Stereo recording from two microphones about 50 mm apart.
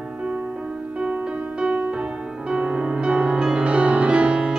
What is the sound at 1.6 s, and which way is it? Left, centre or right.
Music, right.